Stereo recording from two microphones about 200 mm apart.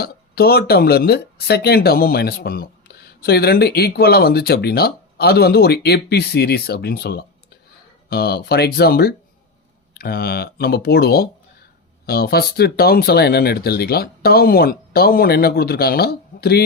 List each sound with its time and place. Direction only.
0.0 s speech: 50° left (ahead or behind)